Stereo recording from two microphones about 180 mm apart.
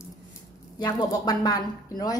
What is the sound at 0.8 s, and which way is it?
Speech, 20° left (ahead or behind).